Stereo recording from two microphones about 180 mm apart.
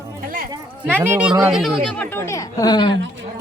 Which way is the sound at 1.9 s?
10° left (ahead or behind).